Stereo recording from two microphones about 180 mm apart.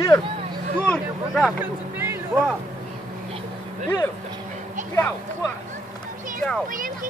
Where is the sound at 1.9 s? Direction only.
15° right (ahead or behind).